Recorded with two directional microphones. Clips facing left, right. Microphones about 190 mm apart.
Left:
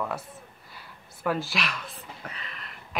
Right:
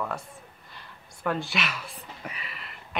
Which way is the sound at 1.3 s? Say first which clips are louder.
Left 1 dB; centre (ahead or behind).